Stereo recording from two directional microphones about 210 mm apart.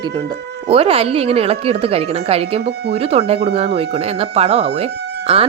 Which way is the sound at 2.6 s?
50° right (ahead or behind).